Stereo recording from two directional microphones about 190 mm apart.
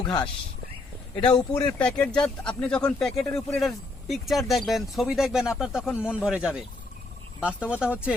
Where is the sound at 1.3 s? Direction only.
25° left (ahead or behind).